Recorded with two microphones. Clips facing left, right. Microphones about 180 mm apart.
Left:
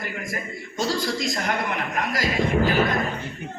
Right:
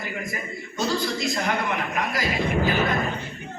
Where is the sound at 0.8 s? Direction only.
45° left (ahead or behind).